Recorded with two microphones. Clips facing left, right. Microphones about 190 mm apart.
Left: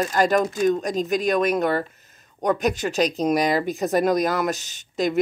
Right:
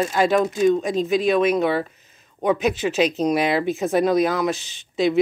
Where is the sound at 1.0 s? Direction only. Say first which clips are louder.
Right 3 dB; 45° left (ahead or behind).